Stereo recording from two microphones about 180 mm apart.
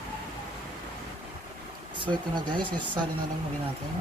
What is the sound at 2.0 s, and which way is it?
Speech, 25° right (ahead or behind).